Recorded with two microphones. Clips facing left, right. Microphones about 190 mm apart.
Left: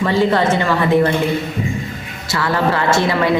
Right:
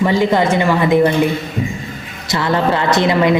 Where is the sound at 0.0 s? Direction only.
15° right (ahead or behind).